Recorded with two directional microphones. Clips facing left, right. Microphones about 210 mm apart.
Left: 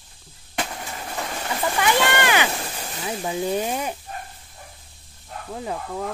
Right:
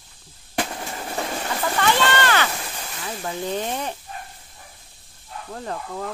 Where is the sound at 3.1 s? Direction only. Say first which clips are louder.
Left 3 dB; 10° left (ahead or behind).